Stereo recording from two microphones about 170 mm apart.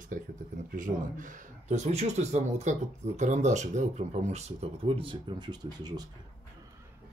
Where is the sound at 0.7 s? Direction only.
50° right (ahead or behind); by 6.0 s 25° right (ahead or behind).